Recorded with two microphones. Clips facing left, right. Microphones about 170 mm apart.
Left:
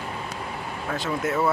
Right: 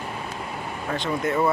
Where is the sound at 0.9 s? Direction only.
5° left (ahead or behind).